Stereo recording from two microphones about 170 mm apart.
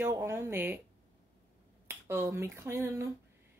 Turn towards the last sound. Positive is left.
turn(degrees=-15)  # may be behind; listen again after turning